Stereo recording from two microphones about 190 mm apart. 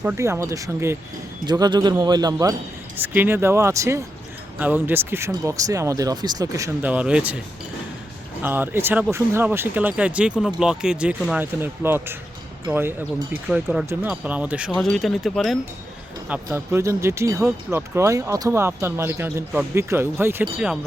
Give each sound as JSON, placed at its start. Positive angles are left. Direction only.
{"t": 0.0, "sound": "speech", "side_deg": -10}
{"t": 8.4, "sound": "speech", "side_deg": -10}
{"t": 13.3, "sound": "speech", "side_deg": -5}
{"t": 16.3, "sound": "speech", "side_deg": -10}